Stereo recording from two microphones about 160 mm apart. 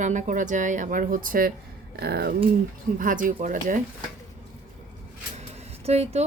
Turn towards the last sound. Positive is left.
turn(degrees=-40)  # may be behind; listen again after turning